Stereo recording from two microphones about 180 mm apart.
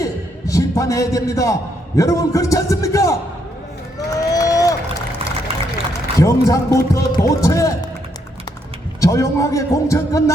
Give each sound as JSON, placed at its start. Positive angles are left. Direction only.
{"t": 0.0, "sound": "a sound", "side_deg": 20}
{"t": 2.0, "sound": "a man's voice", "side_deg": 20}
{"t": 3.9, "sound": "run", "side_deg": 20}
{"t": 6.1, "sound": "a man's voice", "side_deg": 15}
{"t": 9.0, "sound": "a man's voice", "side_deg": 20}